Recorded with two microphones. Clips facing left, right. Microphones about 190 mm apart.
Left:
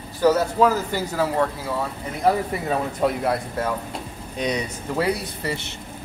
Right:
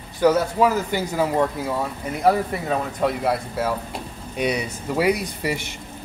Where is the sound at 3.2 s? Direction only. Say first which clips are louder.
Right 1 dB; 5° right (ahead or behind).